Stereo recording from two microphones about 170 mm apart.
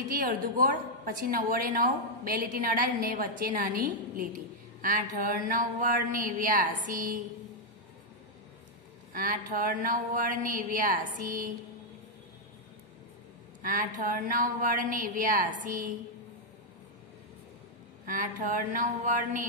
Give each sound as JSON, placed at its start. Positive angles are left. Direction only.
{"t": 0.1, "sound": "a woman's voice", "side_deg": -55}
{"t": 9.1, "sound": "a woman's voice", "side_deg": -55}
{"t": 13.6, "sound": "speech", "side_deg": -50}
{"t": 18.0, "sound": "speech", "side_deg": -50}